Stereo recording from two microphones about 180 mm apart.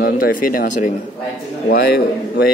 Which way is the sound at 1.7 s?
60° left (ahead or behind).